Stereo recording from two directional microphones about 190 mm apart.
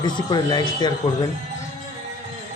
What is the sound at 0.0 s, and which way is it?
Speech, 20° left (ahead or behind).